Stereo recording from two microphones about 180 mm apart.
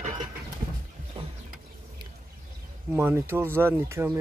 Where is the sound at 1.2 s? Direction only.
25° right (ahead or behind).